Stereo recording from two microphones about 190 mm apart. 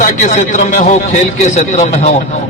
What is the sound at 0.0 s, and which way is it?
A man's voice, 40° left (ahead or behind).